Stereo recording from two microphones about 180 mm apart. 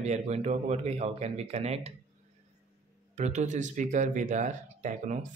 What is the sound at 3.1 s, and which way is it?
Speech, 40° right (ahead or behind).